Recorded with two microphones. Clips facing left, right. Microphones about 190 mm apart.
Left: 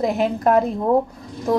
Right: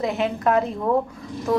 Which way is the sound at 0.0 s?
40° left (ahead or behind).